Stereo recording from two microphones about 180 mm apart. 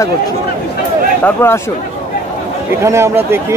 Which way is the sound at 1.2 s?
15° left (ahead or behind).